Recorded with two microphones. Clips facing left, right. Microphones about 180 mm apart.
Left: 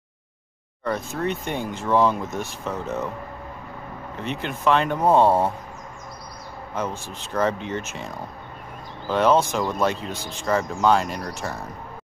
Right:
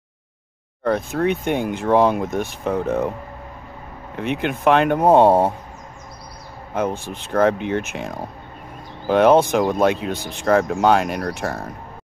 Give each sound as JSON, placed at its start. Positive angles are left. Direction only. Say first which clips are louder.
{"t": 0.8, "sound": "speech", "louder": "right 6 dB", "side_deg": -60}
{"t": 4.2, "sound": "speech", "louder": "right 6 dB", "side_deg": -60}
{"t": 5.1, "sound": "speech", "louder": "right 4 dB", "side_deg": -15}
{"t": 6.7, "sound": "speech", "louder": "right 6 dB", "side_deg": -55}
{"t": 9.1, "sound": "speech", "louder": "right 5 dB", "side_deg": -55}